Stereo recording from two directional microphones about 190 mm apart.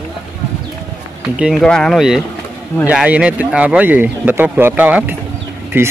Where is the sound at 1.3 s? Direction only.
5° right (ahead or behind).